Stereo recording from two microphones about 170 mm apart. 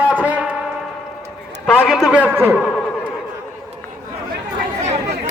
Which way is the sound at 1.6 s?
Centre (ahead or behind).